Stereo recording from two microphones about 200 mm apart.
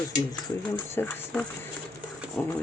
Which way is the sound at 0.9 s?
10° left (ahead or behind).